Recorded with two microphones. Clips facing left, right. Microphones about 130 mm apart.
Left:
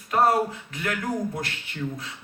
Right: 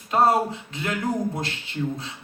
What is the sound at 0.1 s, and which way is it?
A man's voice, 25° right (ahead or behind).